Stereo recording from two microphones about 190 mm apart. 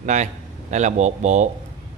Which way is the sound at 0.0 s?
40° right (ahead or behind).